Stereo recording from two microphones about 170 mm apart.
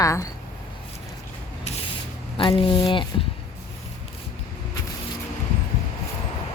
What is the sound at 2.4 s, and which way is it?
Speech, 30° left (ahead or behind).